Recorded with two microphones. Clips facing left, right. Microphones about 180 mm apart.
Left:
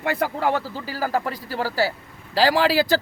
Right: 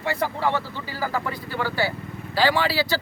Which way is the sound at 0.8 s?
40° left (ahead or behind).